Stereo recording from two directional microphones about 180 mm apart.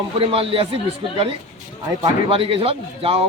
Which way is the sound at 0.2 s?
30° right (ahead or behind).